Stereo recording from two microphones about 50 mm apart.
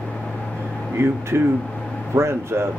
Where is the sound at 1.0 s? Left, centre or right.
Right.